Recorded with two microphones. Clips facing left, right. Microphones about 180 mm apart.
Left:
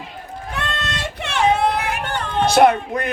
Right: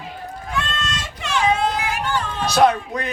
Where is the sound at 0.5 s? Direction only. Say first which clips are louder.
Even; 60° left (ahead or behind).